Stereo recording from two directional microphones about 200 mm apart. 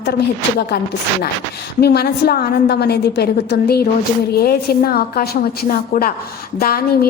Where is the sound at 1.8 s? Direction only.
55° left (ahead or behind).